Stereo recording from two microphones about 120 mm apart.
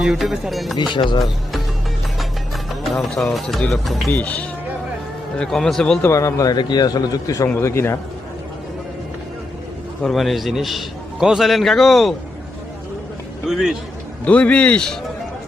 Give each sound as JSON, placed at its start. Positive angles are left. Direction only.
{"t": 0.0, "sound": "a man's voice", "side_deg": 0}
{"t": 0.8, "sound": "a man's voice", "side_deg": 40}
{"t": 2.6, "sound": "a man's voice", "side_deg": 0}
{"t": 4.1, "sound": "a man's voice", "side_deg": 10}
{"t": 6.0, "sound": "a man's voice", "side_deg": 25}
{"t": 7.4, "sound": "a man's voice", "side_deg": 20}
{"t": 10.0, "sound": "a man's voice", "side_deg": 0}
{"t": 13.5, "sound": "a man's voice", "side_deg": 0}
{"t": 14.3, "sound": "speech", "side_deg": 10}